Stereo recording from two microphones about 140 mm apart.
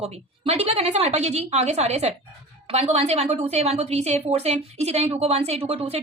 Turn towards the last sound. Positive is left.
turn(degrees=-45)  # may be behind; listen again after turning